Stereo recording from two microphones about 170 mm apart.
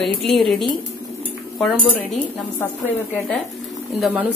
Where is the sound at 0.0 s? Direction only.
Centre (ahead or behind).